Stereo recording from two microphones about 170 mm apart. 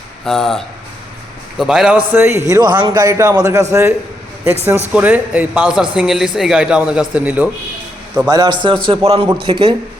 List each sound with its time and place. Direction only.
0.3 s a man's voice: centre (ahead or behind)
2.1 s a man's voice: 20° right (ahead or behind)
8.3 s a man's voice: 25° right (ahead or behind)